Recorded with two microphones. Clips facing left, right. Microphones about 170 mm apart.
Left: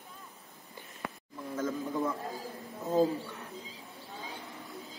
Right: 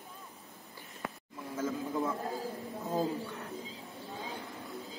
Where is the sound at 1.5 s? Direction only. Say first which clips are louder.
Left 1 dB; 10° right (ahead or behind).